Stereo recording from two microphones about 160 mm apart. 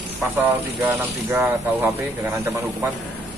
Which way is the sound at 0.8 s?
15° right (ahead or behind).